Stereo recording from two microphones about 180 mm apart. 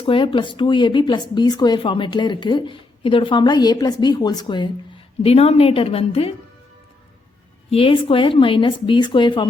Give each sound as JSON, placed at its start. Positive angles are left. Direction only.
{"t": 0.0, "sound": "a woman's voice", "side_deg": 30}
{"t": 7.7, "sound": "a woman's voice", "side_deg": 30}